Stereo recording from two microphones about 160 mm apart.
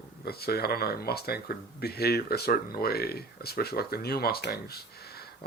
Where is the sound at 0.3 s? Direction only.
80° left.